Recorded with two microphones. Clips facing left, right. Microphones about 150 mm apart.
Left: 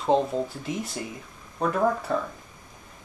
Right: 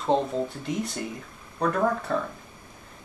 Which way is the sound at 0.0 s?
Centre (ahead or behind).